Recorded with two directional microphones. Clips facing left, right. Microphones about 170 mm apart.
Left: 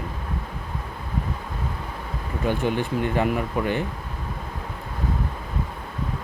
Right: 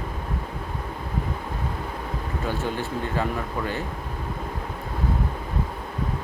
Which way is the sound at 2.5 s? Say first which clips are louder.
Left 5 dB; 15° left (ahead or behind).